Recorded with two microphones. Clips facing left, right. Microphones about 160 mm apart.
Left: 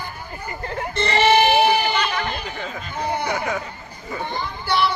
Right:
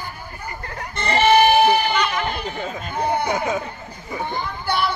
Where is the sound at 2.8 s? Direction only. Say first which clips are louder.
Right 3 dB; 55° right (ahead or behind).